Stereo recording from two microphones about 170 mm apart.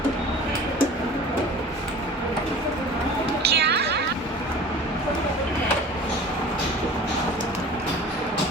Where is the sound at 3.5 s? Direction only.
75° right (ahead or behind).